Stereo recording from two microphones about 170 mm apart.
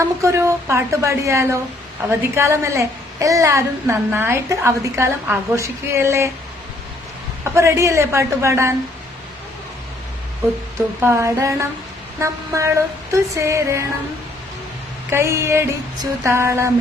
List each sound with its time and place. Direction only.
0.0 s a woman's voice: 15° right (ahead or behind)
7.4 s a woman's voice: 15° right (ahead or behind)
11.0 s a woman's voice: 15° right (ahead or behind)
15.1 s a woman's voice: 15° right (ahead or behind)